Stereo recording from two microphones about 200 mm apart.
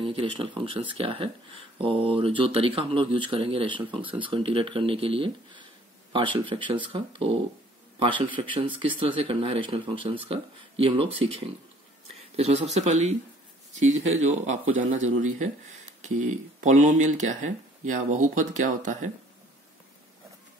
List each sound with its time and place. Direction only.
0.0 s speech: 25° right (ahead or behind)